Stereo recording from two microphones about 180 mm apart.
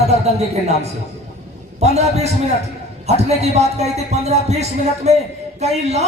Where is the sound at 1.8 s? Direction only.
35° right (ahead or behind).